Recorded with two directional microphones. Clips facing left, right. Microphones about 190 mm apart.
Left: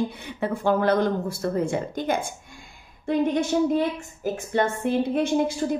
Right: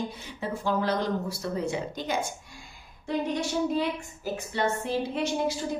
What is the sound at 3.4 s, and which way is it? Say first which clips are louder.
A woman's voice: left 5 dB; 50° left (ahead or behind).